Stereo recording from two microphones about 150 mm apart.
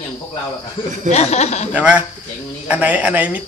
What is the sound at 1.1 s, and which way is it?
Chuckle, 50° left (ahead or behind).